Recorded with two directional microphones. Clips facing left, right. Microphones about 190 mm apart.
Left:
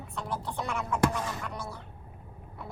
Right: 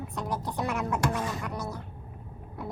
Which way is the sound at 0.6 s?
Centre (ahead or behind).